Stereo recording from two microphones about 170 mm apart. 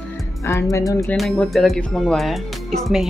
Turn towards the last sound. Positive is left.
turn(degrees=0)  # may be behind; listen again after turning